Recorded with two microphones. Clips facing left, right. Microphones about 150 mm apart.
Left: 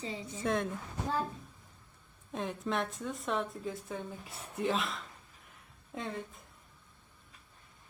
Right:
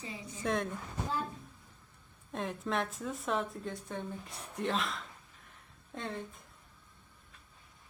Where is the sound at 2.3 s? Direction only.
Centre (ahead or behind).